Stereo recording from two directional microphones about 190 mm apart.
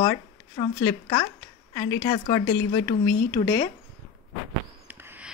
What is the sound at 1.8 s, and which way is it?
Speech, 25° left (ahead or behind).